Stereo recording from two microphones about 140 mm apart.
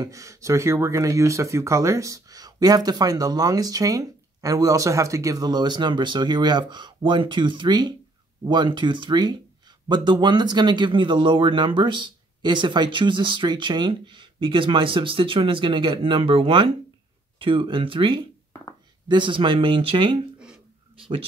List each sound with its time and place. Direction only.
0.0 s speech: 20° right (ahead or behind); by 20.2 s 40° right (ahead or behind)